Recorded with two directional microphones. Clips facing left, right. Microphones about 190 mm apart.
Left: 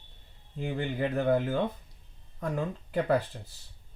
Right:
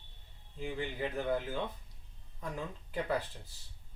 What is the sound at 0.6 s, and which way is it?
Speech, 60° left (ahead or behind).